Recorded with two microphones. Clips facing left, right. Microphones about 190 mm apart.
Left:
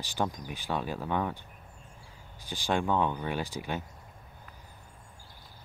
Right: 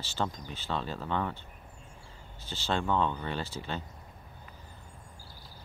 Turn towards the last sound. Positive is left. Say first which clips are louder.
# left 2 dB
turn(degrees=10)  # may be behind; listen again after turning